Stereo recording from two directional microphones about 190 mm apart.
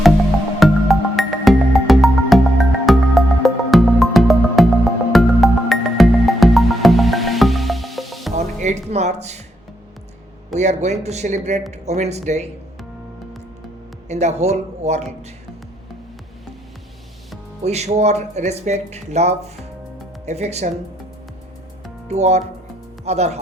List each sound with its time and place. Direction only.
0.6 s music: centre (ahead or behind)
8.6 s music: 35° right (ahead or behind)
10.5 s speech: 35° right (ahead or behind)
14.1 s speech: 35° right (ahead or behind)
17.6 s speech: 35° right (ahead or behind)
22.1 s speech: 35° right (ahead or behind)